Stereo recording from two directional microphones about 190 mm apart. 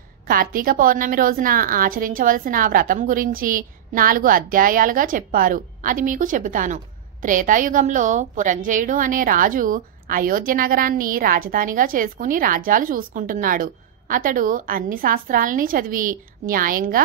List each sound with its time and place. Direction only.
0.3 s a woman's voice: 50° right (ahead or behind)